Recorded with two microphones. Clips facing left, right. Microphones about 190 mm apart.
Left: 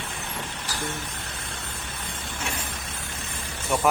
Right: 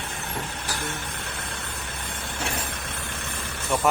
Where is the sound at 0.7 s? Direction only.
55° right (ahead or behind).